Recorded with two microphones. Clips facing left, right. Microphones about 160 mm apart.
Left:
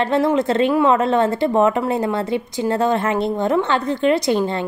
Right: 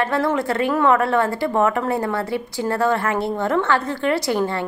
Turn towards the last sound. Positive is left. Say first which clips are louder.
# left 2 dB
turn(degrees=20)  # may be behind; listen again after turning